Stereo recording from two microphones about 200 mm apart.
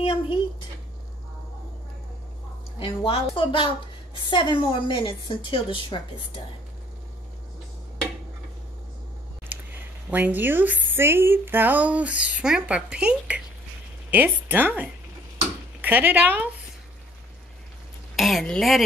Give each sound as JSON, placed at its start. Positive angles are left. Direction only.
{"t": 2.8, "sound": "a woman's voice", "side_deg": 25}
{"t": 10.1, "sound": "speech", "side_deg": -10}
{"t": 18.1, "sound": "speech", "side_deg": 0}